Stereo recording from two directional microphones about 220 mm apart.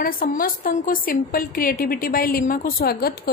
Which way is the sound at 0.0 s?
40° left (ahead or behind).